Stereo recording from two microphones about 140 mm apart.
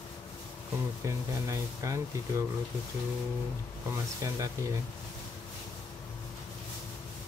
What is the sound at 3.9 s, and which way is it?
Speech, 20° right (ahead or behind).